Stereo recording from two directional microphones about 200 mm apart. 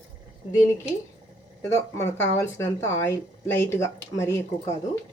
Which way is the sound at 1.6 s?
15° left (ahead or behind).